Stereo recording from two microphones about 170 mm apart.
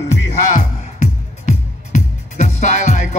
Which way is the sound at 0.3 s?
40° left (ahead or behind).